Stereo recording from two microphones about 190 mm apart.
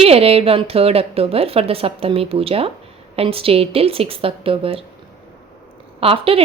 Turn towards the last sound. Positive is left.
turn(degrees=-30)  # may be behind; listen again after turning